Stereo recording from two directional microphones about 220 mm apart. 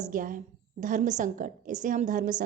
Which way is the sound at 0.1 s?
40° right (ahead or behind).